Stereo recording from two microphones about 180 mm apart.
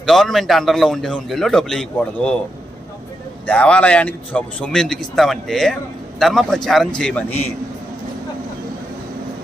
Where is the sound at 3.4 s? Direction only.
5° left (ahead or behind).